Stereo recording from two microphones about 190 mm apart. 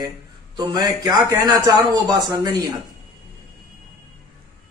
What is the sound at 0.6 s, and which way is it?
A man's voice, 20° right (ahead or behind).